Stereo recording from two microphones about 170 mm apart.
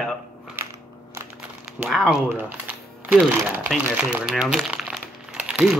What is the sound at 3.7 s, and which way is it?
Crumpling, 10° right (ahead or behind).